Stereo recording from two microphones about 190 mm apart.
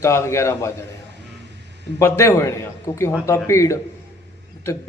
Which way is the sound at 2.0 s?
15° left (ahead or behind).